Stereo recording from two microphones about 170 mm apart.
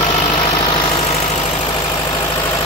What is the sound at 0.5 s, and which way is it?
Vehicle, 25° left (ahead or behind).